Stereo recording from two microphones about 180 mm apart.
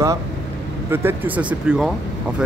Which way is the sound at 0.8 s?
10° right (ahead or behind).